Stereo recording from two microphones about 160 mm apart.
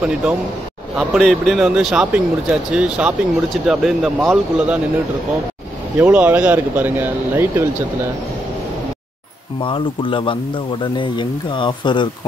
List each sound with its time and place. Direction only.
0.0 s speech: 10° right (ahead or behind)
5.9 s speech: 10° right (ahead or behind)
9.6 s speech: 30° left (ahead or behind)